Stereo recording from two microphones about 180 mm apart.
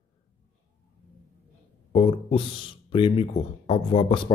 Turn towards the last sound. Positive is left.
turn(degrees=30)  # may be behind; listen again after turning